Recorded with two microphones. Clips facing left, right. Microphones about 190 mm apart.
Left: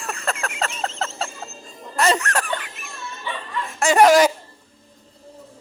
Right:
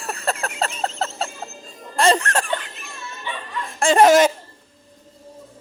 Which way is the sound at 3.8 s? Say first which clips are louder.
Right 1 dB; 25° right (ahead or behind).